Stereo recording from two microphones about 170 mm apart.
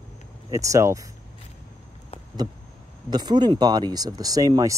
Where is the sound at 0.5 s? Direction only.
20° right (ahead or behind).